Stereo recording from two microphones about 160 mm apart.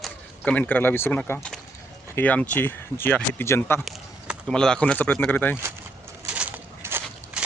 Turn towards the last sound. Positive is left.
turn(degrees=-10)  # may be behind; listen again after turning